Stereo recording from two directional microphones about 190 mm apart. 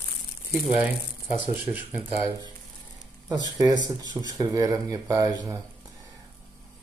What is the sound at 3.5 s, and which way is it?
Speech, 20° right (ahead or behind).